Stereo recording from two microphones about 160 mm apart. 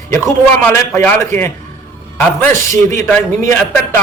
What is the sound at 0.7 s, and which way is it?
A man's voice, 15° left (ahead or behind).